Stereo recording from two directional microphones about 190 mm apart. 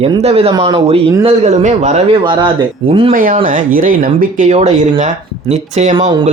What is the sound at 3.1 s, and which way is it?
Speech, 45° right (ahead or behind).